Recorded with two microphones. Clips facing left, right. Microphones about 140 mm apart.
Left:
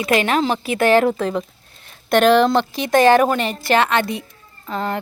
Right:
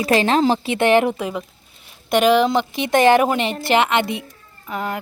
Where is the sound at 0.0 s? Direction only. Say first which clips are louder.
Right 2 dB; 30° right (ahead or behind); by 2.6 s 10° right (ahead or behind).